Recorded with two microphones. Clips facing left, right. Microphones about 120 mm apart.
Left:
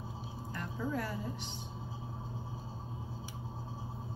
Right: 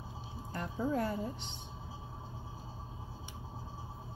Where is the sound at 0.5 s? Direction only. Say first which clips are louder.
Right 3 dB; 30° right (ahead or behind).